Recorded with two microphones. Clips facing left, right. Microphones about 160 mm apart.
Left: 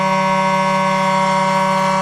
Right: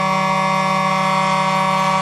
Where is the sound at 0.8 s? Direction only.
45° left (ahead or behind).